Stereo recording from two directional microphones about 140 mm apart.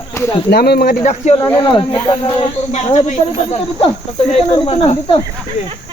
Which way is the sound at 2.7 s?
50° left (ahead or behind).